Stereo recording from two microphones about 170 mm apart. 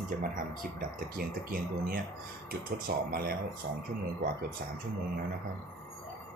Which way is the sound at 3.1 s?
60° right (ahead or behind).